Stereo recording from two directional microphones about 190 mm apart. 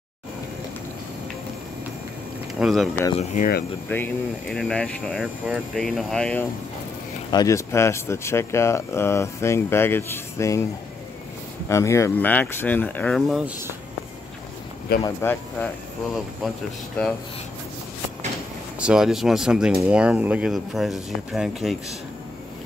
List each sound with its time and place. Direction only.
2.6 s speech: centre (ahead or behind)
3.3 s speech: 50° left (ahead or behind)
3.9 s speech: 5° left (ahead or behind)
7.2 s speech: 20° left (ahead or behind)
11.7 s speech: 15° left (ahead or behind)
15.0 s speech: 10° left (ahead or behind)
18.8 s speech: 5° right (ahead or behind)